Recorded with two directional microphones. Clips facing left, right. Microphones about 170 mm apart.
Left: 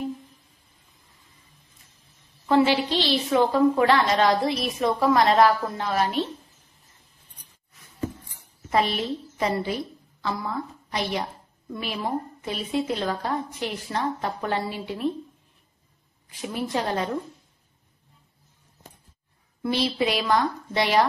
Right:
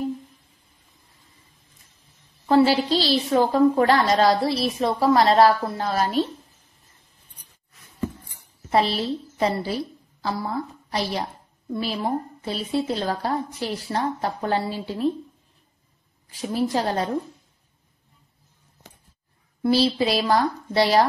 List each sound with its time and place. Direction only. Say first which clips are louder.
2.4 s a woman's voice: right 2 dB; 35° right (ahead or behind)
8.6 s a woman's voice: right 2 dB; 30° right (ahead or behind)
16.3 s a woman's voice: right 5 dB; 35° right (ahead or behind)
19.6 s a woman's voice: right 4 dB; 30° right (ahead or behind)